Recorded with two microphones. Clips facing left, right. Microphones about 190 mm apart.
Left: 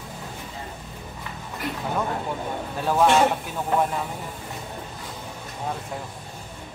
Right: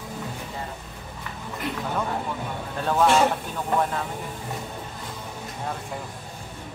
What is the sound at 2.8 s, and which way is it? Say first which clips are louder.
Speech: left 1 dB; 10° left (ahead or behind).